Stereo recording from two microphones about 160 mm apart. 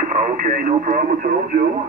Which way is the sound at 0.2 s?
60° right (ahead or behind).